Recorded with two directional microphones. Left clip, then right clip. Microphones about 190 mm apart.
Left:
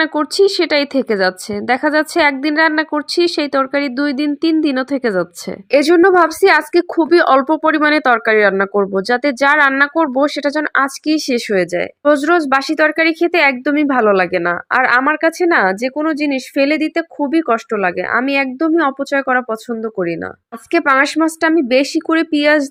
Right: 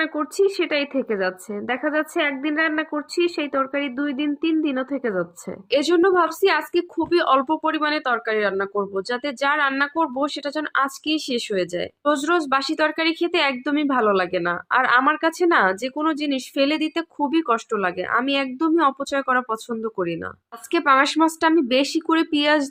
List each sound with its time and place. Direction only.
0.0 s speech: 35° left (ahead or behind)